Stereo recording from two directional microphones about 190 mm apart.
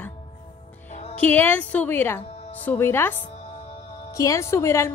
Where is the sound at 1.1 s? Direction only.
10° left (ahead or behind).